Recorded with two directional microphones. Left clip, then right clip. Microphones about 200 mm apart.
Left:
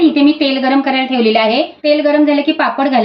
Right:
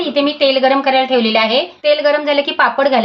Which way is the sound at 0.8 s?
60° right (ahead or behind).